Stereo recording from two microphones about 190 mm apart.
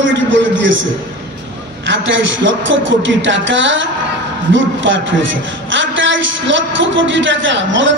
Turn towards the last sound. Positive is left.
turn(degrees=-75)  # may be behind; listen again after turning